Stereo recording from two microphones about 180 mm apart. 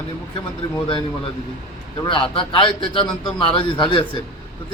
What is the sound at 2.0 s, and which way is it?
A man's voice, 30° left (ahead or behind).